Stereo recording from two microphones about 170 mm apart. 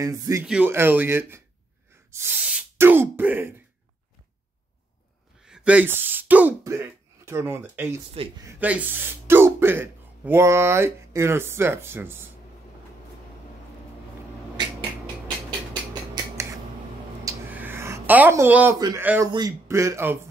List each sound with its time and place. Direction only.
0.0 s speech: 20° right (ahead or behind)
5.4 s speech: 5° right (ahead or behind)
8.2 s speech: 35° right (ahead or behind)
8.5 s speech: 10° right (ahead or behind)
17.2 s a sound: 20° right (ahead or behind)
18.8 s speech: 20° right (ahead or behind)